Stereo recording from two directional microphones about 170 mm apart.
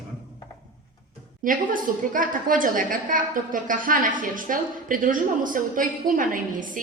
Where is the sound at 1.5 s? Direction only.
55° right (ahead or behind).